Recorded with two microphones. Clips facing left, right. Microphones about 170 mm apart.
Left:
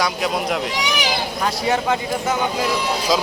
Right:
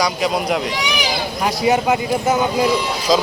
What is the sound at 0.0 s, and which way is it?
Speech, centre (ahead or behind).